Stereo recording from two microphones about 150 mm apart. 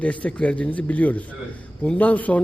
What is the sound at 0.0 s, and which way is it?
A man's voice, 10° left (ahead or behind).